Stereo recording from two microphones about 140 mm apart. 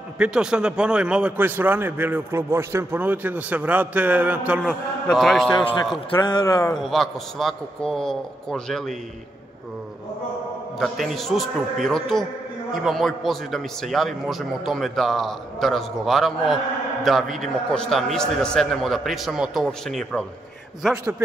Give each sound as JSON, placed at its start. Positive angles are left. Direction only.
{"t": 0.2, "sound": "a man's voice", "side_deg": -5}
{"t": 6.0, "sound": "a man's voice", "side_deg": 35}
{"t": 6.7, "sound": "a man's voice", "side_deg": 0}
{"t": 10.8, "sound": "a man's voice", "side_deg": 0}